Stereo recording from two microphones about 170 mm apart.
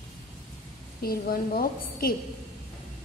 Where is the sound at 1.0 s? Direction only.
60° left (ahead or behind).